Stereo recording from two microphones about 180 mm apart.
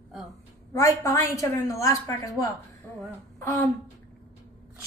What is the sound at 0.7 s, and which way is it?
A woman's voice, 15° left (ahead or behind).